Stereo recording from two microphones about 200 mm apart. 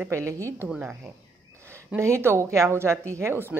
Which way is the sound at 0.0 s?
15° right (ahead or behind).